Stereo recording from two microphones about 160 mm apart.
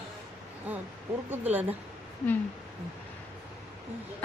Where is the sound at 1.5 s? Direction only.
10° right (ahead or behind).